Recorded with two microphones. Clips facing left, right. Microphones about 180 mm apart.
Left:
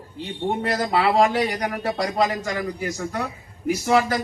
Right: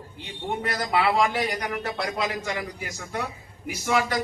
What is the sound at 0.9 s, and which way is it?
A man's voice, 35° left (ahead or behind).